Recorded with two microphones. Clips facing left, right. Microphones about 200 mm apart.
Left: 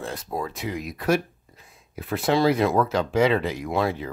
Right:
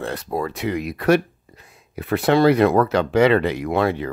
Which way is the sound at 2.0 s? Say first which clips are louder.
Right 5 dB; 65° right (ahead or behind).